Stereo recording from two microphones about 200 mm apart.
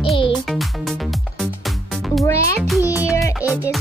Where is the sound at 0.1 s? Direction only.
25° left (ahead or behind).